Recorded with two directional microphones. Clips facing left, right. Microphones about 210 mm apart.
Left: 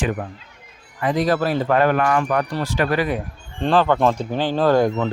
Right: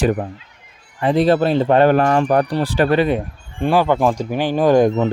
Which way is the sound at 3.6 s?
10° right (ahead or behind).